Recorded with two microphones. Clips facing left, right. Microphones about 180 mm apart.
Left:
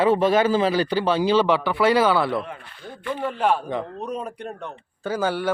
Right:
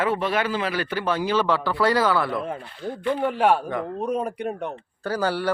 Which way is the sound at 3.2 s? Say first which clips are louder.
Right 1 dB; 10° right (ahead or behind).